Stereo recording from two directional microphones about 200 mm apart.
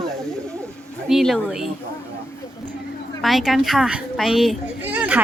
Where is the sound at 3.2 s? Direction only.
Centre (ahead or behind).